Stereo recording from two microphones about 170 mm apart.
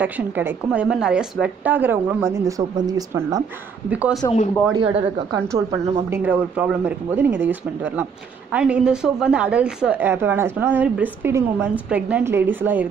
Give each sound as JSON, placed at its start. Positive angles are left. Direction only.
{"t": 0.0, "sound": "speech", "side_deg": -10}
{"t": 3.9, "sound": "speech", "side_deg": -10}
{"t": 4.7, "sound": "speech", "side_deg": -30}